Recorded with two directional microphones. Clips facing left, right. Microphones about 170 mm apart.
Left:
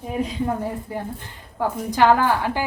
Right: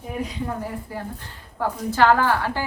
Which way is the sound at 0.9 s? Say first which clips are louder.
Left 3 dB; 20° left (ahead or behind).